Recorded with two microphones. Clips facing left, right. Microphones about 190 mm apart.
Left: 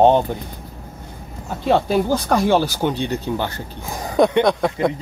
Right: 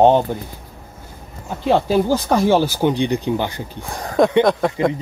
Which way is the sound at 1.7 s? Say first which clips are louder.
Right 1 dB; 10° right (ahead or behind).